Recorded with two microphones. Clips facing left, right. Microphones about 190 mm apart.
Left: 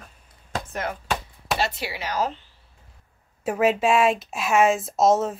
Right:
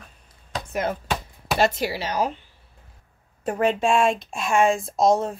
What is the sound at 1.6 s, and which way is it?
Speech, 45° right (ahead or behind).